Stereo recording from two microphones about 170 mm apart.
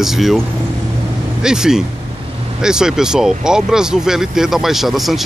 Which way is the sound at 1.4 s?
5° right (ahead or behind).